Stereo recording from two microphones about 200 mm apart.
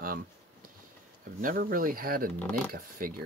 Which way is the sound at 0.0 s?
45° right (ahead or behind).